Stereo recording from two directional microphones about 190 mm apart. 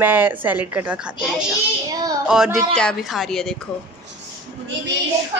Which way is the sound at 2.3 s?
5° right (ahead or behind).